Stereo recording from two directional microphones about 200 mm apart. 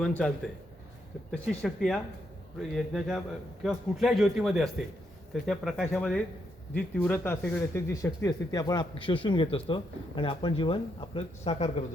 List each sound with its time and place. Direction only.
0.0 s a man's voice: 5° left (ahead or behind); by 11.7 s 30° left (ahead or behind)